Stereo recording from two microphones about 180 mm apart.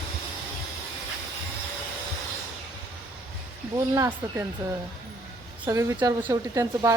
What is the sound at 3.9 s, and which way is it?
Speech, 10° right (ahead or behind).